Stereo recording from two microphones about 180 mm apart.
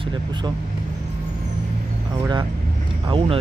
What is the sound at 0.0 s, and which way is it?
Speech, 25° right (ahead or behind).